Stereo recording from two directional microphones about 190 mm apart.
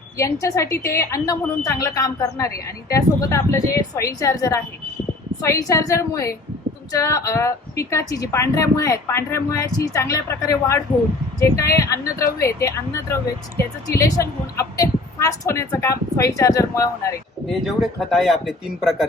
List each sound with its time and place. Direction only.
0.2 s a woman's voice: 15° left (ahead or behind)
17.7 s speech: centre (ahead or behind)